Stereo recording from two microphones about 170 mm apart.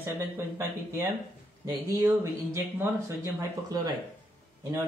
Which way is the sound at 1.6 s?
15° right (ahead or behind).